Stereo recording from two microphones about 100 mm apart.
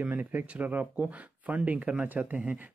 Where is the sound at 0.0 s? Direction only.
15° right (ahead or behind).